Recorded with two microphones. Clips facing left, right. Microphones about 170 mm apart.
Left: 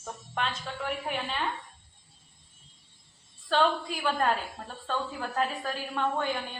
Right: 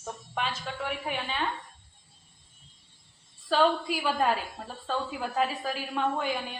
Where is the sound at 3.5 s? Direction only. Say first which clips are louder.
Right 2 dB; 5° right (ahead or behind).